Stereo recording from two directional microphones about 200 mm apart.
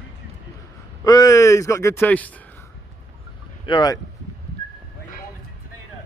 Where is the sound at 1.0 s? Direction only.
15° left (ahead or behind).